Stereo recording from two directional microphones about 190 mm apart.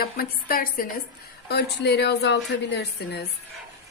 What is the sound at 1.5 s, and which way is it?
Speech, 60° left (ahead or behind).